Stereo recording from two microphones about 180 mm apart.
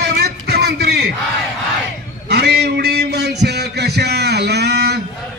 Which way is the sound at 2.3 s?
65° right (ahead or behind).